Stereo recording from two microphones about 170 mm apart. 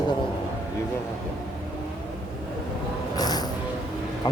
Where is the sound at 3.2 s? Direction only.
25° left (ahead or behind).